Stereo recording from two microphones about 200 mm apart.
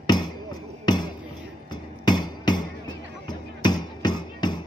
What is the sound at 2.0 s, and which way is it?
Music, 20° left (ahead or behind).